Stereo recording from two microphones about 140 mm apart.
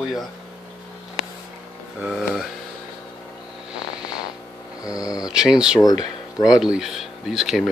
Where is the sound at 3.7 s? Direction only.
5° right (ahead or behind).